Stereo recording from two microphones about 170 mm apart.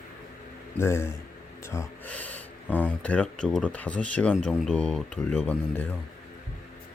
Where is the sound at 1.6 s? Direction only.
15° left (ahead or behind).